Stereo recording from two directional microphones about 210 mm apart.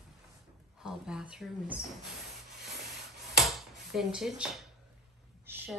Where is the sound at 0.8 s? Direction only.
5° right (ahead or behind).